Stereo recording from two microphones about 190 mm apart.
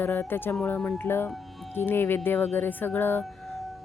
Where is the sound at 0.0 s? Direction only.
10° left (ahead or behind).